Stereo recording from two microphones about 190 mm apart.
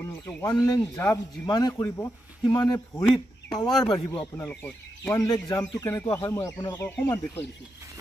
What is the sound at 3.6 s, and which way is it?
Speech, 20° left (ahead or behind).